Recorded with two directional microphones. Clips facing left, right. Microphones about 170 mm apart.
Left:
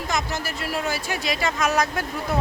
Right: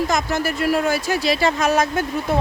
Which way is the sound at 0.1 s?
55° right (ahead or behind).